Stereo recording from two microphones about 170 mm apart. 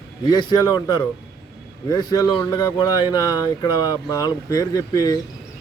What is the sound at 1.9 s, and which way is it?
Speech, 25° left (ahead or behind).